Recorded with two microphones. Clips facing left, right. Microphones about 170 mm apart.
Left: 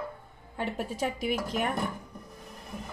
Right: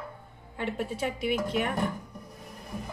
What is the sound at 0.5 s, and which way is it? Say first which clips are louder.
Speech: even; 40° left (ahead or behind).